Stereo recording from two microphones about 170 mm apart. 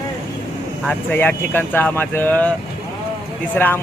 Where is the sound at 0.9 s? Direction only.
10° left (ahead or behind).